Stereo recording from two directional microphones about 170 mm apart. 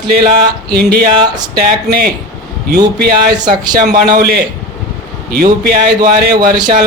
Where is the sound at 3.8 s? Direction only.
60° right (ahead or behind).